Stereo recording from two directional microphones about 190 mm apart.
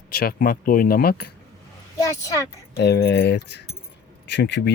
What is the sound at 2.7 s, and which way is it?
Speech, 60° left (ahead or behind).